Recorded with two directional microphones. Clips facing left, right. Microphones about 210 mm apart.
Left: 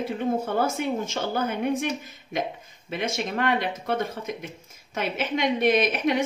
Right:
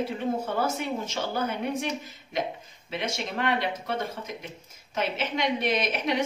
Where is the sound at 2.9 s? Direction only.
50° left (ahead or behind).